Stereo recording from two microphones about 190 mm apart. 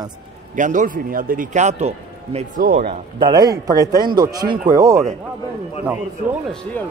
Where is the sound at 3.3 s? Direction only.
20° right (ahead or behind).